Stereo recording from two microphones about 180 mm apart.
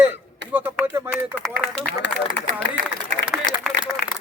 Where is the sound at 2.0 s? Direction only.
80° left.